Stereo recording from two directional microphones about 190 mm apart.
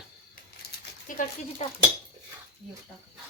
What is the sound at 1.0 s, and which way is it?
Speech, 45° left (ahead or behind).